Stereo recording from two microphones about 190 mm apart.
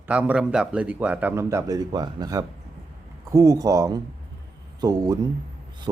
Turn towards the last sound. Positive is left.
turn(degrees=-20)  # may be behind; listen again after turning